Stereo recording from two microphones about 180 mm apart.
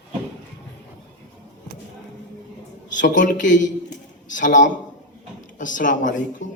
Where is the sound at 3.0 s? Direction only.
45° left (ahead or behind).